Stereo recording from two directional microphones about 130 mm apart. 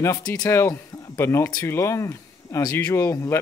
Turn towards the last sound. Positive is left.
turn(degrees=20)  # may be behind; listen again after turning